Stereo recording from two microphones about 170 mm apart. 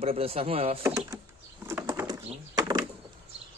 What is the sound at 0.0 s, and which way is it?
Speech, 35° right (ahead or behind).